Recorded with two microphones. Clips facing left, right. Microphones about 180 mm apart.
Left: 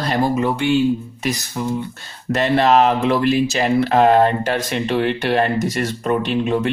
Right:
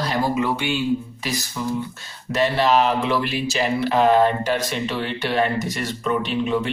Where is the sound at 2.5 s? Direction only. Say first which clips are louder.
Left 6 dB; 55° left (ahead or behind).